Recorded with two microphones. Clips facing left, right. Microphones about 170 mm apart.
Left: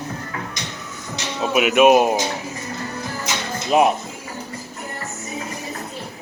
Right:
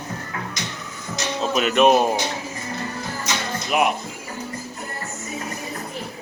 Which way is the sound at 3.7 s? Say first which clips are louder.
Left 5 dB; 30° left (ahead or behind).